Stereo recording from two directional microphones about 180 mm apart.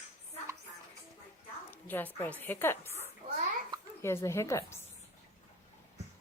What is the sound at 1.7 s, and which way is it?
A woman's voice, 10° left (ahead or behind).